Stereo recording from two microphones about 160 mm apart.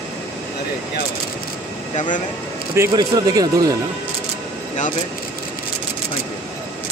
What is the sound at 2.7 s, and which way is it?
Speech, 20° right (ahead or behind).